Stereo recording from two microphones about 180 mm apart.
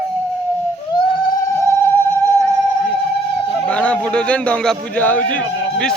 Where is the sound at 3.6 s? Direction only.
5° left (ahead or behind).